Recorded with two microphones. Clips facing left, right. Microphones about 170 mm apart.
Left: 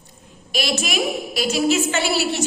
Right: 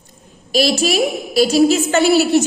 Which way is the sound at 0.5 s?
35° right (ahead or behind).